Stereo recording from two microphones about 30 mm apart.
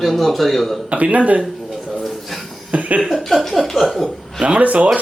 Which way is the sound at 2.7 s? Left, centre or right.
Right.